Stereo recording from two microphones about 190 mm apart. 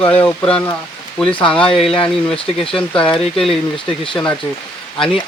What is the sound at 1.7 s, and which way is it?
Speech, 30° left (ahead or behind).